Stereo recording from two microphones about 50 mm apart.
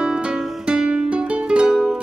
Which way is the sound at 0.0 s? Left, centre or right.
Centre.